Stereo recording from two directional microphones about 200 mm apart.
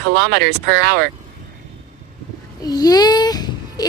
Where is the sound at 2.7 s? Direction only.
20° left (ahead or behind).